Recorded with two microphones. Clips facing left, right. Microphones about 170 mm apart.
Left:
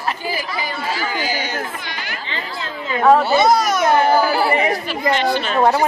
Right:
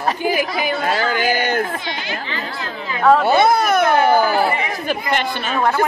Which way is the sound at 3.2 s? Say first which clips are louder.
Right 1 dB; 55° right (ahead or behind).